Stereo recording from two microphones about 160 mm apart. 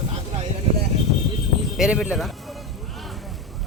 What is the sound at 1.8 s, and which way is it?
Speech, 5° right (ahead or behind).